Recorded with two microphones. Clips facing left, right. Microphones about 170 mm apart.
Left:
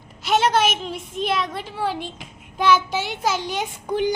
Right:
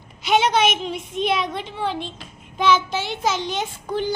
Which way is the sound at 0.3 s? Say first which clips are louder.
Right 1 dB; 5° left (ahead or behind).